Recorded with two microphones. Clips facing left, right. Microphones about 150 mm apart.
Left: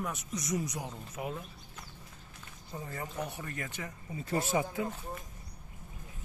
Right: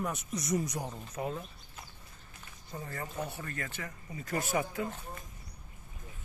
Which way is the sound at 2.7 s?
10° left (ahead or behind).